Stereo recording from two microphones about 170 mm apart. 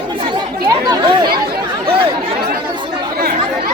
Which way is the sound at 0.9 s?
25° right (ahead or behind).